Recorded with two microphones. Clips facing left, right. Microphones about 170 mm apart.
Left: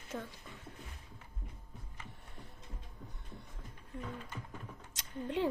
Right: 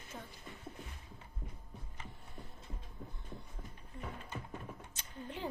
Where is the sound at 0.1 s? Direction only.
75° left (ahead or behind).